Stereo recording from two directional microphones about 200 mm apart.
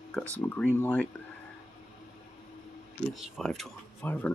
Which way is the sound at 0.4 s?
10° left (ahead or behind).